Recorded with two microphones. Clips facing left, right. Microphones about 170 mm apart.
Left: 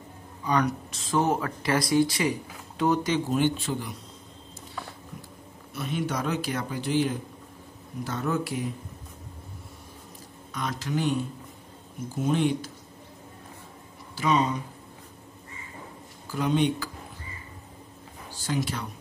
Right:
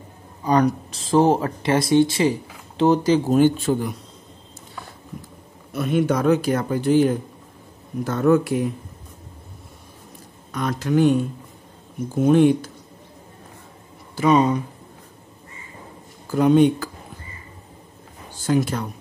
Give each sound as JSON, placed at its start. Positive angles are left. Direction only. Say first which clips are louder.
{"t": 0.4, "sound": "speech", "louder": "right 7 dB", "side_deg": -35}
{"t": 5.7, "sound": "speech", "louder": "right 10 dB", "side_deg": -55}
{"t": 10.5, "sound": "speech", "louder": "right 9 dB", "side_deg": -55}
{"t": 12.3, "sound": "speech", "louder": "right 10 dB", "side_deg": -55}
{"t": 14.1, "sound": "speech", "louder": "right 8 dB", "side_deg": -50}
{"t": 16.3, "sound": "speech", "louder": "right 10 dB", "side_deg": -50}
{"t": 18.3, "sound": "speech", "louder": "right 9 dB", "side_deg": -50}